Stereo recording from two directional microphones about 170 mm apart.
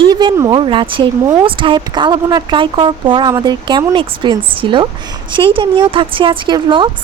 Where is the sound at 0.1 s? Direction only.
25° right (ahead or behind).